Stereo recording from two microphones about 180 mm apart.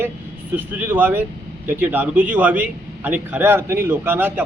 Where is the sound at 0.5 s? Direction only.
10° right (ahead or behind).